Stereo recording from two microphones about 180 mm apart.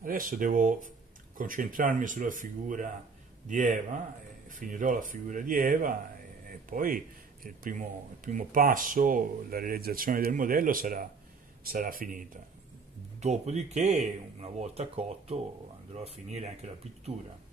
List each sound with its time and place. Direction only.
0.0 s speech: 50° right (ahead or behind)
13.2 s speech: 40° right (ahead or behind)